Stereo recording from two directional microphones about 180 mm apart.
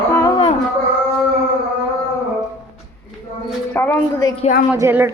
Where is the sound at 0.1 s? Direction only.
15° left (ahead or behind).